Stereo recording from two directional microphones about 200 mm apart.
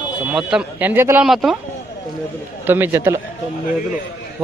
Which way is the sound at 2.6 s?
10° right (ahead or behind).